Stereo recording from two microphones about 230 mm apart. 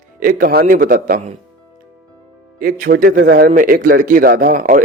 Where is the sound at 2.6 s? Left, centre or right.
Right.